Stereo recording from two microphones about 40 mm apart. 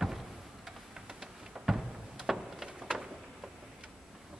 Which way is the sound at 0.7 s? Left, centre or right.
Centre.